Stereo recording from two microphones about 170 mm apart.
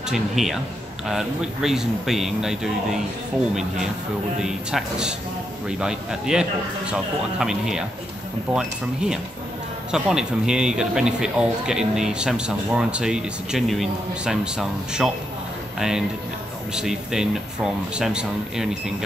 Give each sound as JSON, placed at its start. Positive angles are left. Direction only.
{"t": 0.1, "sound": "speech", "side_deg": 0}
{"t": 4.4, "sound": "speech", "side_deg": -5}
{"t": 16.7, "sound": "speech", "side_deg": -5}